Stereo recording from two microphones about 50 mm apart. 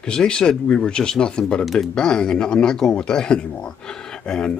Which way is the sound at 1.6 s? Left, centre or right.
Centre.